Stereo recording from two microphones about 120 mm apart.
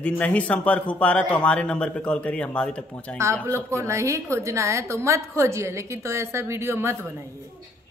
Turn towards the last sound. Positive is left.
turn(degrees=-20)  # may be behind; listen again after turning